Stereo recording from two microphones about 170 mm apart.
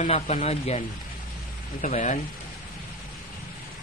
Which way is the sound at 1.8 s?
45° left (ahead or behind).